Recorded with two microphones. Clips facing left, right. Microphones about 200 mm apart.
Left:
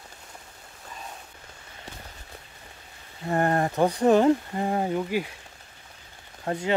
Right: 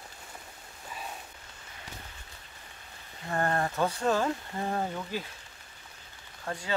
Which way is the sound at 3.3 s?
20° left (ahead or behind).